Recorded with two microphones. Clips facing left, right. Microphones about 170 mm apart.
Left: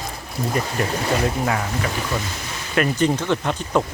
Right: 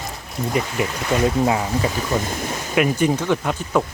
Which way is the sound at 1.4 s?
20° right (ahead or behind).